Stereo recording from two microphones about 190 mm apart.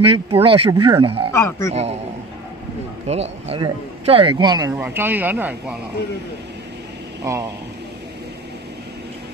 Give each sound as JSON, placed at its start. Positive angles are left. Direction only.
{"t": 0.0, "sound": "speech", "side_deg": -30}
{"t": 1.3, "sound": "speech", "side_deg": 15}
{"t": 1.7, "sound": "a man's voice", "side_deg": -35}
{"t": 3.1, "sound": "speech", "side_deg": -35}
{"t": 4.7, "sound": "speech", "side_deg": -10}
{"t": 7.2, "sound": "speech", "side_deg": -15}